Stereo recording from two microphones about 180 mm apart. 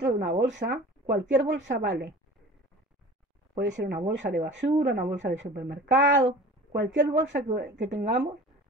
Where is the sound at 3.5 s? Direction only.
80° right.